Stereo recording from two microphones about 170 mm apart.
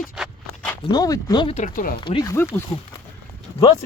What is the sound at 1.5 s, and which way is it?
Speech, 50° left (ahead or behind).